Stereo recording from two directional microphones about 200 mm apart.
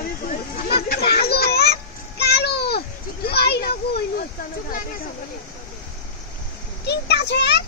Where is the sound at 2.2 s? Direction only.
55° left (ahead or behind).